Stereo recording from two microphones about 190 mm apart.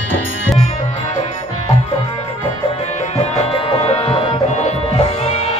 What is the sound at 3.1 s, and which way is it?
Music, 30° left (ahead or behind).